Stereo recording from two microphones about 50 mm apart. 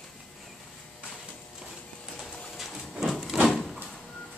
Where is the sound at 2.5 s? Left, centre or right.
Centre.